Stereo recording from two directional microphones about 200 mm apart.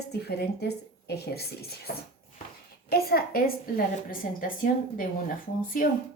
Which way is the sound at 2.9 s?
50° left (ahead or behind).